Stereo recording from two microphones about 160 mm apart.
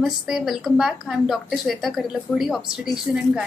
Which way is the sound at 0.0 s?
Centre (ahead or behind).